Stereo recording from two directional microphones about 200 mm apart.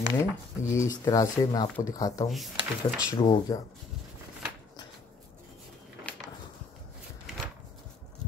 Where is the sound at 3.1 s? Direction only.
20° left (ahead or behind).